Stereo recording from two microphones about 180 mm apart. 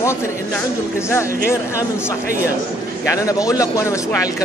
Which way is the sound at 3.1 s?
20° left (ahead or behind).